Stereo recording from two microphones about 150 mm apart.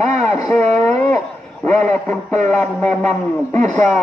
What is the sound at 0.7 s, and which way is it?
Dog, 20° left (ahead or behind).